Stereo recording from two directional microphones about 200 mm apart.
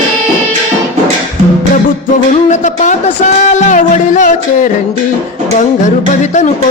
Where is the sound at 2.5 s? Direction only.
35° left (ahead or behind).